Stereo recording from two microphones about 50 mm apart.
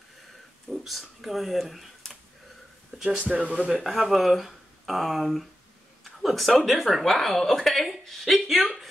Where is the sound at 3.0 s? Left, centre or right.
Right.